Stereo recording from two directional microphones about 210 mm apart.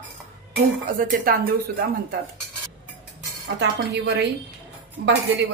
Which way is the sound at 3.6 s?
55° right (ahead or behind).